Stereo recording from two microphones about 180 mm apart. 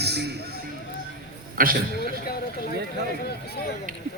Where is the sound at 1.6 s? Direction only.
50° right (ahead or behind).